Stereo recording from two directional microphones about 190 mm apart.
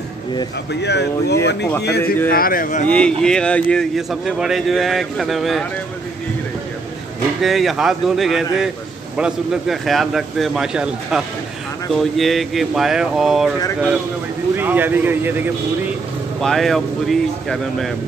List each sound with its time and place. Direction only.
0.7 s speech: 60° left (ahead or behind); by 2.9 s 45° left (ahead or behind)
2.9 s a man's voice: 5° left (ahead or behind)
7.4 s a man's voice: centre (ahead or behind)
14.6 s speech: 10° right (ahead or behind)
16.3 s a man's voice: centre (ahead or behind)